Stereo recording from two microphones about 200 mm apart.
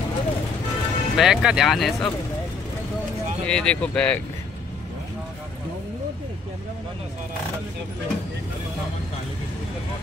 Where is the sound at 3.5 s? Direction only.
5° left (ahead or behind).